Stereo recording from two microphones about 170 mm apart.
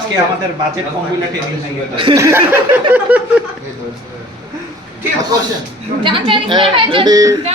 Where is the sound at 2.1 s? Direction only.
15° right (ahead or behind).